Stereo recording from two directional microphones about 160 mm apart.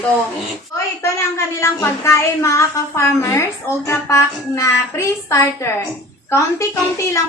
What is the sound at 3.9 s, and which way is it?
Child singing, 20° left (ahead or behind).